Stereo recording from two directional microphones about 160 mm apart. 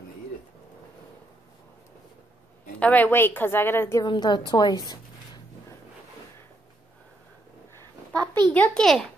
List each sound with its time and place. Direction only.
2.8 s a woman's voice: 10° left (ahead or behind)
4.0 s a woman's voice: 25° left (ahead or behind)
8.1 s a sound: 25° right (ahead or behind)
8.5 s a child's voice: 5° left (ahead or behind)